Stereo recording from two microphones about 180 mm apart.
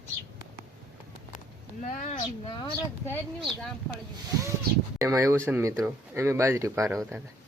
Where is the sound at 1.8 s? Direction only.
40° left (ahead or behind).